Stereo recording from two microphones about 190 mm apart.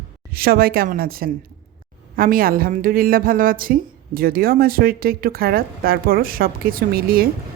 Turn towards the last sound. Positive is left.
turn(degrees=-50)  # may be behind; listen again after turning